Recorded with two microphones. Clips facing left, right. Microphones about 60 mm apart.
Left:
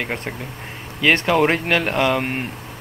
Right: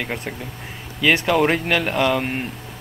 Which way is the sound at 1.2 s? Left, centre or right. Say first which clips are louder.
Left 1 dB; centre.